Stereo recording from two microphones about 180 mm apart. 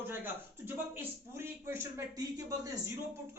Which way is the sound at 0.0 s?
10° right (ahead or behind).